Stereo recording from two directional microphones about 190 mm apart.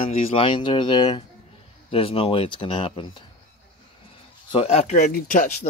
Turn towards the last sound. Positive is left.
turn(degrees=45)  # may be behind; listen again after turning